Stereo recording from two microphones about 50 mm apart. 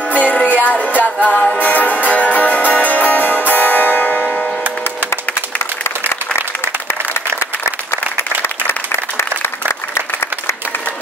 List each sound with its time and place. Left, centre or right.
0.2 s music: left
9.4 s applause: left